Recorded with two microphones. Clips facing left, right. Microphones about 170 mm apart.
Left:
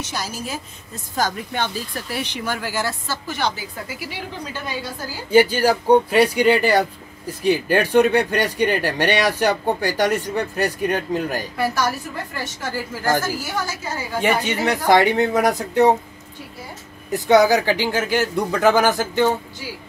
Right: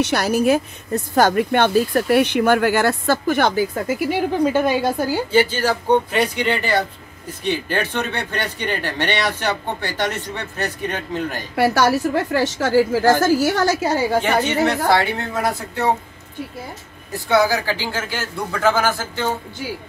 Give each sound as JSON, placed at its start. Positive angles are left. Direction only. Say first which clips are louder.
{"t": 0.0, "sound": "speech", "louder": "right 12 dB", "side_deg": -65}
{"t": 5.3, "sound": "speech", "louder": "left 5 dB", "side_deg": 10}
{"t": 11.5, "sound": "a woman's voice", "louder": "right 8 dB", "side_deg": -75}
{"t": 14.9, "sound": "speech", "louder": "left 4 dB", "side_deg": 15}
{"t": 17.3, "sound": "speech", "louder": "left 3 dB", "side_deg": 20}